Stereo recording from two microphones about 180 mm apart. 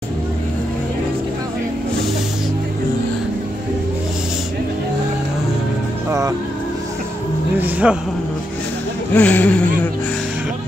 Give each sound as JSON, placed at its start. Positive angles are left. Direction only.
{"t": 6.0, "sound": "music", "side_deg": -20}
{"t": 7.5, "sound": "a sound", "side_deg": -10}
{"t": 9.1, "sound": "speech", "side_deg": 10}